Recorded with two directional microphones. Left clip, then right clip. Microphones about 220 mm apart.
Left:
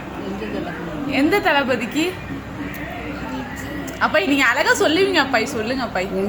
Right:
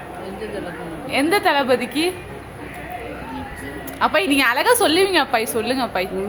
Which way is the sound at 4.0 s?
15° right (ahead or behind).